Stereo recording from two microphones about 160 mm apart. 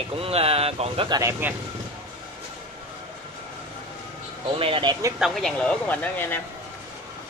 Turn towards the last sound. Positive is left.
turn(degrees=10)  # may be behind; listen again after turning